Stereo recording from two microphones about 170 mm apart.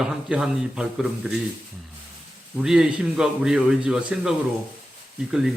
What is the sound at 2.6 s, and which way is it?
Speech, 5° right (ahead or behind).